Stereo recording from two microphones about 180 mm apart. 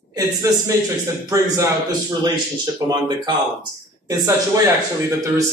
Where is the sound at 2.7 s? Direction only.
25° right (ahead or behind).